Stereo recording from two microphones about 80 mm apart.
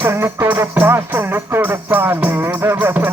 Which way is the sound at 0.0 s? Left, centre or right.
Right.